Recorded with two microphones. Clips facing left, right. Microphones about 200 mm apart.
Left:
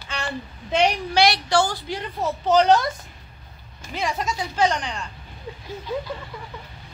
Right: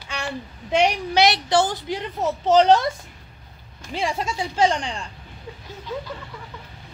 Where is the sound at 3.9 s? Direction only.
30° right (ahead or behind).